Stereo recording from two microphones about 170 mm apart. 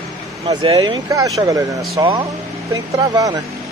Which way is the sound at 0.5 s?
25° right (ahead or behind).